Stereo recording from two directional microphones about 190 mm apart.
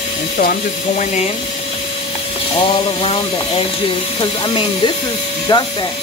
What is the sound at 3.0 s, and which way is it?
Speech, 30° left (ahead or behind).